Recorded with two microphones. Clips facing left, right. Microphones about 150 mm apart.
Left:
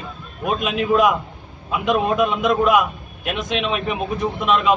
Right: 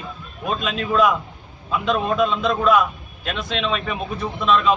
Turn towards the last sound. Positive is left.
turn(degrees=15)  # may be behind; listen again after turning